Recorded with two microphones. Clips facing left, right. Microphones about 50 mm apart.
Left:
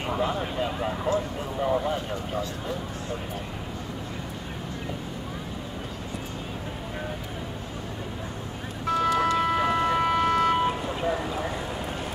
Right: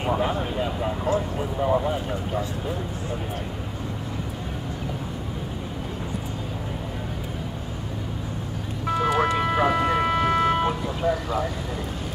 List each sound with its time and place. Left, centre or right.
0.2 s speech: centre
8.8 s vehicle: centre
9.1 s music: right
9.4 s ambulance: centre